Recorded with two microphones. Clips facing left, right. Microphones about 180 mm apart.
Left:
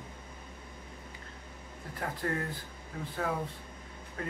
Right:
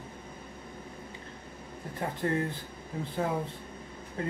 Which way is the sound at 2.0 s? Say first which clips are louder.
Right 4 dB; 25° right (ahead or behind).